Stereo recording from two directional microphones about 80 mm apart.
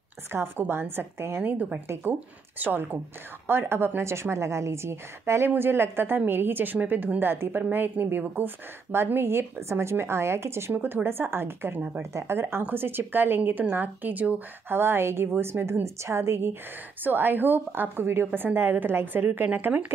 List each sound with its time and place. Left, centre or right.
0.3 s a woman's voice: right
12.0 s a woman's voice: right; by 19.9 s centre